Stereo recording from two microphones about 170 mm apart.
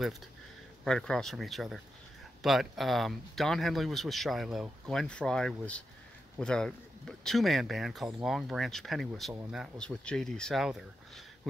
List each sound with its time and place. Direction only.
0.8 s speech: 5° left (ahead or behind)